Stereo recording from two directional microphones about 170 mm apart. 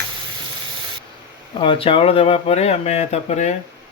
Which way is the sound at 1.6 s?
30° left (ahead or behind).